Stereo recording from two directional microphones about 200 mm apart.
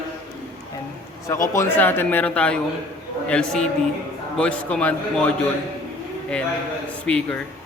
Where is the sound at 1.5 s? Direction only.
10° left (ahead or behind).